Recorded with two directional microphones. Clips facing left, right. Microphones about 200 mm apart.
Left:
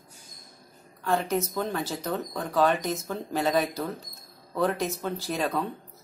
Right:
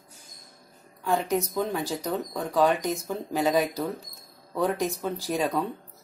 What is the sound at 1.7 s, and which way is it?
Speech, 15° right (ahead or behind).